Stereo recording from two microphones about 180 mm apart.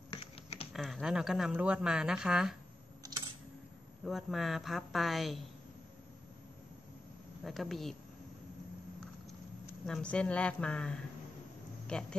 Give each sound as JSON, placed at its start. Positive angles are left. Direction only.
{"t": 0.1, "sound": "typing", "side_deg": 35}
{"t": 0.7, "sound": "a woman's voice", "side_deg": 0}
{"t": 4.0, "sound": "a woman's voice", "side_deg": 0}
{"t": 7.4, "sound": "a woman's voice", "side_deg": 0}
{"t": 9.8, "sound": "a woman's voice", "side_deg": 5}